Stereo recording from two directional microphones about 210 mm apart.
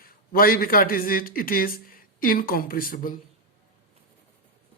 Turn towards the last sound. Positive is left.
turn(degrees=40)  # may be behind; listen again after turning